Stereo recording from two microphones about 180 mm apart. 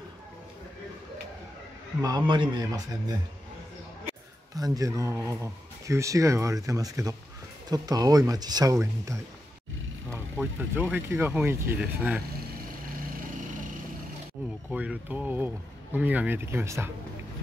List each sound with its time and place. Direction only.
2.0 s speech: 20° right (ahead or behind)
4.6 s speech: 20° right (ahead or behind)
14.7 s speech: 5° right (ahead or behind)